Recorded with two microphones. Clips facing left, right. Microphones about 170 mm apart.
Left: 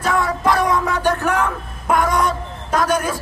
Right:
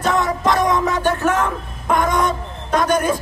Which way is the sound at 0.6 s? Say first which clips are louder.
Right 1 dB; 20° right (ahead or behind).